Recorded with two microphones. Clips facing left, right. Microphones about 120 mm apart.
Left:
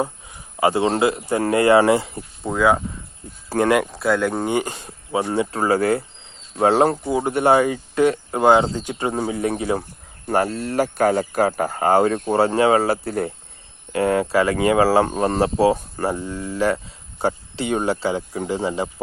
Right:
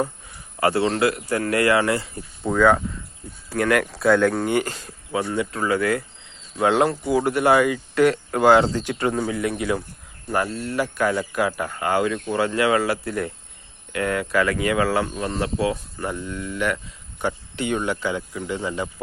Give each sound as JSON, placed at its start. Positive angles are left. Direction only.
{"t": 0.6, "sound": "speech", "side_deg": 20}
{"t": 2.4, "sound": "speech", "side_deg": 10}
{"t": 3.5, "sound": "speech", "side_deg": 25}
{"t": 4.0, "sound": "speech", "side_deg": 5}
{"t": 4.4, "sound": "speech", "side_deg": 20}
{"t": 7.1, "sound": "speech", "side_deg": 25}
{"t": 9.1, "sound": "speech", "side_deg": 30}
{"t": 15.0, "sound": "speech", "side_deg": 45}